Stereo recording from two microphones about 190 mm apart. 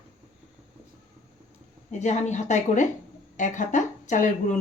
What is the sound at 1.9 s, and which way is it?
Speech, 35° left (ahead or behind).